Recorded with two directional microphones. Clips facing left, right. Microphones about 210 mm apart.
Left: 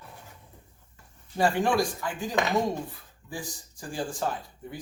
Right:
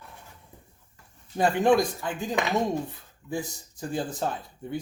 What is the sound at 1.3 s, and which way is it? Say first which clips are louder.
Speech: right 3 dB; 20° right (ahead or behind).